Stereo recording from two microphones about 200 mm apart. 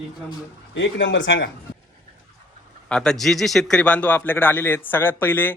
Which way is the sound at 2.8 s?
5° left (ahead or behind).